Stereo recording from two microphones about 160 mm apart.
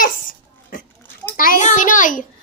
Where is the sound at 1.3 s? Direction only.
60° left (ahead or behind).